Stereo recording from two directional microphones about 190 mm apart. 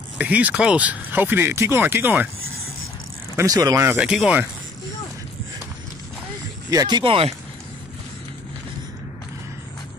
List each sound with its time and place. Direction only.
0.2 s speech: 5° right (ahead or behind)
3.3 s speech: 20° right (ahead or behind)
6.7 s speech: 20° right (ahead or behind)